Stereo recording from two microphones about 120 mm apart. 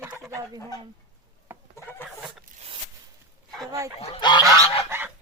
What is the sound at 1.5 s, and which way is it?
Chicken, 15° right (ahead or behind).